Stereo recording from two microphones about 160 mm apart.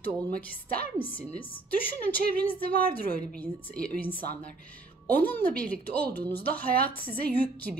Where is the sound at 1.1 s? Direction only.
10° left (ahead or behind).